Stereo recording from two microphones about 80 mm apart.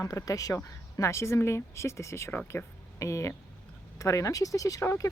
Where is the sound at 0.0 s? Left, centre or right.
Left.